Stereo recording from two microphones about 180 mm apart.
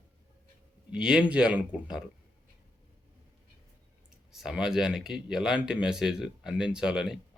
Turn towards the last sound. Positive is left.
turn(degrees=-5)  # may be behind; listen again after turning